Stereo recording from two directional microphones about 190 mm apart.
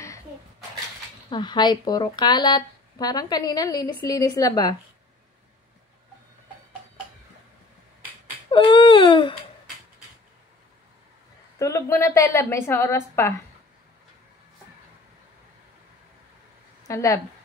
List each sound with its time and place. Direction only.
1.3 s speech: 25° left (ahead or behind)
8.5 s baby cry: 25° left (ahead or behind)
11.5 s a woman's voice: 15° left (ahead or behind)
16.8 s a woman's voice: 15° left (ahead or behind)